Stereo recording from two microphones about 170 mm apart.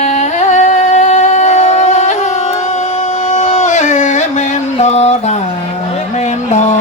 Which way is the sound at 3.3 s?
45° left (ahead or behind).